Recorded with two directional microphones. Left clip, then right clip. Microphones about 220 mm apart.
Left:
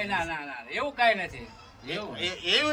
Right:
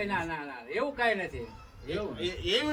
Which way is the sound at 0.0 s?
15° right (ahead or behind).